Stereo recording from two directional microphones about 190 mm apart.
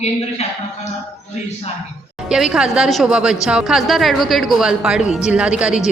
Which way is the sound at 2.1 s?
5° right (ahead or behind).